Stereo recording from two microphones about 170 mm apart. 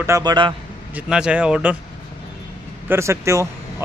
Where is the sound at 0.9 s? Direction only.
5° right (ahead or behind).